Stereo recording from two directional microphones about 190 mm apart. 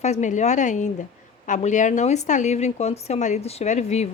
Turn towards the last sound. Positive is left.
turn(degrees=35)  # may be behind; listen again after turning